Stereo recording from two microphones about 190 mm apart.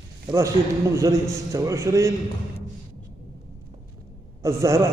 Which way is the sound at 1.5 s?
15° right (ahead or behind).